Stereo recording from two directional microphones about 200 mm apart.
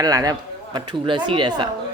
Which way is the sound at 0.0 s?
20° right (ahead or behind).